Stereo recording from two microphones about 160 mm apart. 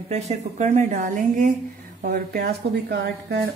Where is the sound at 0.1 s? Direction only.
45° right (ahead or behind).